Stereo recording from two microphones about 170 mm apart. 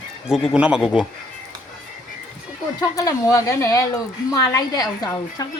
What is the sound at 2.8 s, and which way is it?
A woman's voice, 20° left (ahead or behind).